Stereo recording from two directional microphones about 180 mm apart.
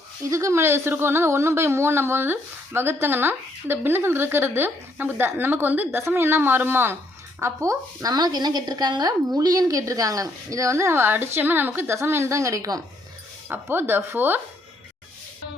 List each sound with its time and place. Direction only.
0.3 s a woman's voice: 15° right (ahead or behind)